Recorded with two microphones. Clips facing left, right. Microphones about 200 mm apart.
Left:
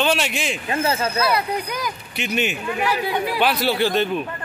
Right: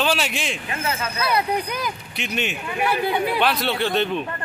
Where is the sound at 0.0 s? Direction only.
Centre (ahead or behind).